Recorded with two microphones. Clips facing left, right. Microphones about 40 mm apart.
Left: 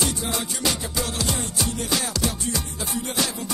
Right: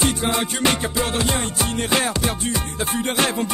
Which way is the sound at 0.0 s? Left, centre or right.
Right.